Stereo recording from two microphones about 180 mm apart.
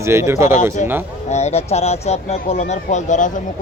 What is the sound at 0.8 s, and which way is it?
Speech, 45° left (ahead or behind).